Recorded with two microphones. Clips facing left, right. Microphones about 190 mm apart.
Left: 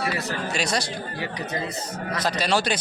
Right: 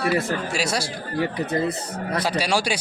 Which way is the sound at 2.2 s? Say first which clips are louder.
Left 1 dB; 10° right (ahead or behind).